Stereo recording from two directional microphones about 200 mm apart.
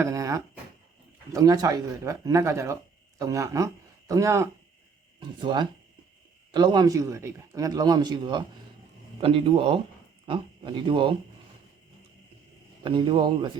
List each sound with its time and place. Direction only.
0.0 s a sound: 15° right (ahead or behind)
1.3 s a man's voice: 20° right (ahead or behind)
12.8 s a man's voice: 25° right (ahead or behind)